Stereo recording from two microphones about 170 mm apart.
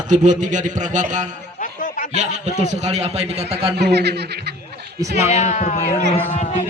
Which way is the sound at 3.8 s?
75° right (ahead or behind).